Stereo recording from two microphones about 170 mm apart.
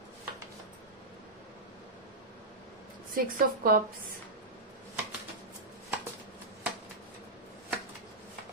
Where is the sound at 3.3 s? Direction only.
55° right (ahead or behind).